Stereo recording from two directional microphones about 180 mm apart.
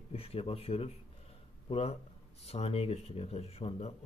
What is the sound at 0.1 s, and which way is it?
Speech, 30° left (ahead or behind).